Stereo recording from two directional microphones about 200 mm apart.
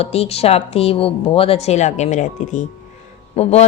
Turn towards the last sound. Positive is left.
turn(degrees=30)  # may be behind; listen again after turning